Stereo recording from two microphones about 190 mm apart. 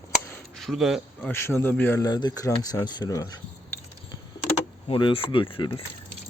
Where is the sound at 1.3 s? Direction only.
15° left (ahead or behind).